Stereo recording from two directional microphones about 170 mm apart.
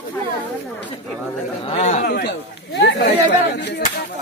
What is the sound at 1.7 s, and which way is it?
Speech, 40° left (ahead or behind).